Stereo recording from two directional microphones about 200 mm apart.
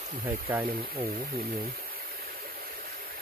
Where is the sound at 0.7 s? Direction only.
45° right (ahead or behind).